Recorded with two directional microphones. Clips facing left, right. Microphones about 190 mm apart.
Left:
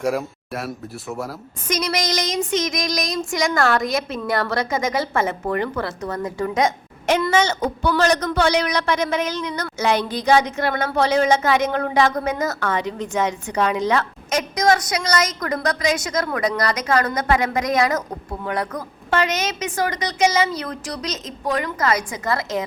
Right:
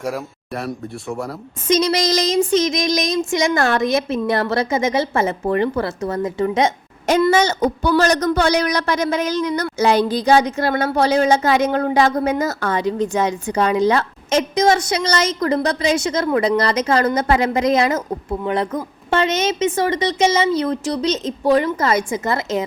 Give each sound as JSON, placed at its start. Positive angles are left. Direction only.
{"t": 0.0, "sound": "speech", "side_deg": 0}
{"t": 1.6, "sound": "child singing", "side_deg": -25}
{"t": 7.1, "sound": "a woman's voice", "side_deg": -35}
{"t": 18.4, "sound": "child singing", "side_deg": -25}